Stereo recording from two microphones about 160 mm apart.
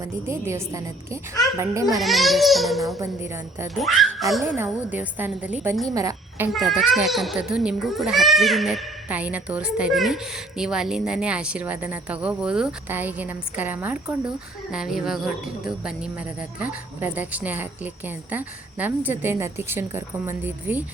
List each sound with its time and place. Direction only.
0.0 s a woman's voice: 15° right (ahead or behind)
1.9 s a child's voice: centre (ahead or behind)
3.0 s a woman's voice: 15° right (ahead or behind)
3.8 s a child's voice: centre (ahead or behind)
4.4 s a woman's voice: 10° right (ahead or behind)
5.9 s a woman's voice: 20° right (ahead or behind)
6.5 s a child's voice: centre (ahead or behind)